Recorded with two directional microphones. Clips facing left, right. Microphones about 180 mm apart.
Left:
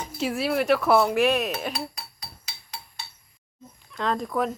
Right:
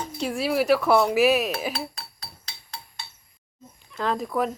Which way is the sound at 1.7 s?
10° left (ahead or behind).